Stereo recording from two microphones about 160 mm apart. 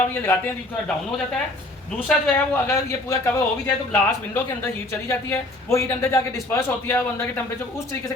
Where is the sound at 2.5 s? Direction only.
15° left (ahead or behind).